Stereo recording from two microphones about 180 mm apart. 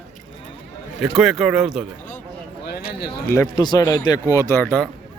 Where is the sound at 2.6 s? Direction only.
60° left (ahead or behind).